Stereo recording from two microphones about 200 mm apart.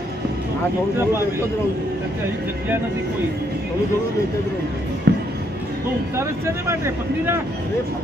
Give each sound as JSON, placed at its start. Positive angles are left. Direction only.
{"t": 5.1, "sound": "music", "side_deg": -55}
{"t": 6.1, "sound": "speech", "side_deg": -15}